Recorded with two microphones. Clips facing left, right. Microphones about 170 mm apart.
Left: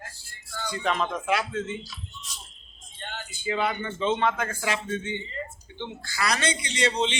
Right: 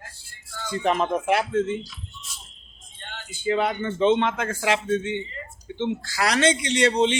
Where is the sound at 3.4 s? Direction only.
50° right (ahead or behind).